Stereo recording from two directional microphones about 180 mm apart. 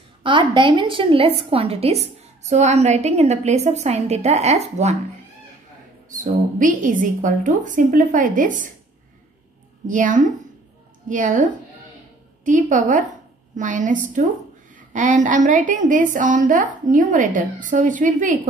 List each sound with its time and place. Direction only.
0.2 s a woman's voice: 25° right (ahead or behind)
6.0 s a woman's voice: 45° right (ahead or behind)
9.8 s a woman's voice: 45° right (ahead or behind)
12.4 s a woman's voice: 45° right (ahead or behind)